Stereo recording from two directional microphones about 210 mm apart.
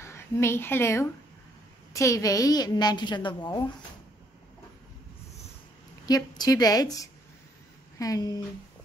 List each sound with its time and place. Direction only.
0.0 s a woman's voice: 10° left (ahead or behind)
6.0 s a woman's voice: 20° left (ahead or behind)